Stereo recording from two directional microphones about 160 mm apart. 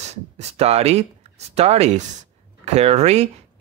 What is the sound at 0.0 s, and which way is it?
Speech, 45° right (ahead or behind).